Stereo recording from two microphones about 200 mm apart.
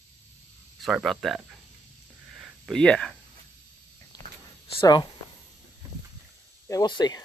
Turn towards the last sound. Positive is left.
turn(degrees=20)  # may be behind; listen again after turning